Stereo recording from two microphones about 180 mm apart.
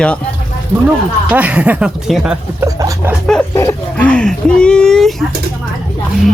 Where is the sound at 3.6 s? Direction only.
10° left (ahead or behind).